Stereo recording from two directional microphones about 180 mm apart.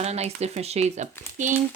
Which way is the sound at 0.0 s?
35° right (ahead or behind).